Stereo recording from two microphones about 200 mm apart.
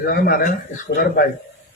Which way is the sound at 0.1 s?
50° left (ahead or behind).